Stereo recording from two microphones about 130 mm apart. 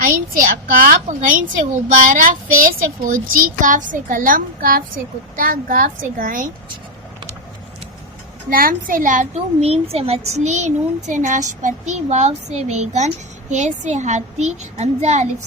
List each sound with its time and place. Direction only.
0.0 s a woman's voice: 90° right
3.3 s a woman's voice: 85° right
8.4 s a woman's voice: 90° right
9.3 s a child's voice: 50° right (ahead or behind); by 11.9 s 70° right (ahead or behind)
12.0 s a child's voice: 55° right (ahead or behind)